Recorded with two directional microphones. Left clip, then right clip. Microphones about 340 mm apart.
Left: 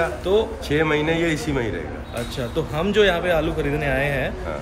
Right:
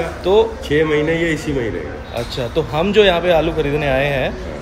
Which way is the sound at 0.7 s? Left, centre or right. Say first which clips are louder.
Right 3 dB; centre.